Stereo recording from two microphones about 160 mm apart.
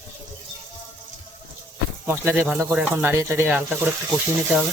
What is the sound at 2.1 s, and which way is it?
Speech, 15° right (ahead or behind).